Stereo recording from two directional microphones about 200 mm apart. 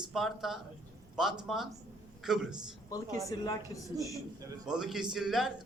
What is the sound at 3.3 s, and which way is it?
Speech, 15° left (ahead or behind).